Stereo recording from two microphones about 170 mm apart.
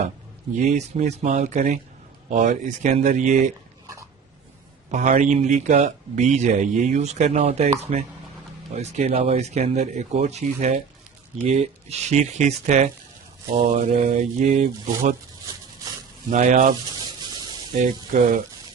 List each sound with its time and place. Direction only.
0.5 s speech: 45° right (ahead or behind)
4.9 s speech: 45° right (ahead or behind)
13.9 s speech: 45° right (ahead or behind)
16.3 s speech: 45° right (ahead or behind)
17.0 s a sound: 25° right (ahead or behind)
17.7 s speech: 50° right (ahead or behind)